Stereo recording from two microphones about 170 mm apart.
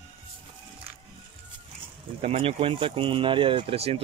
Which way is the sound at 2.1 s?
40° right (ahead or behind).